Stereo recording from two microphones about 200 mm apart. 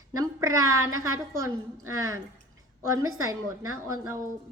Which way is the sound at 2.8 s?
15° right (ahead or behind).